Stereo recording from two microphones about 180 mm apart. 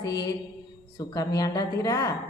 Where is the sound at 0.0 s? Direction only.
20° left (ahead or behind).